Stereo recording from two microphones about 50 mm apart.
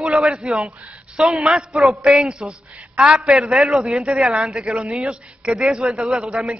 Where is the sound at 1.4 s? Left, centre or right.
Centre.